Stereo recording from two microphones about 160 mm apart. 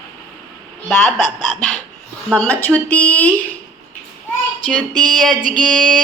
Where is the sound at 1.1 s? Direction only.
5° left (ahead or behind).